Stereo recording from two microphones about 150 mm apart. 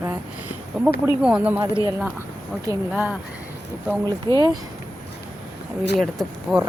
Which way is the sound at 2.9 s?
10° right (ahead or behind).